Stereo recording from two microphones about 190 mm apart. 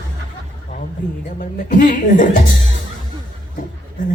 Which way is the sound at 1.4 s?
45° left (ahead or behind).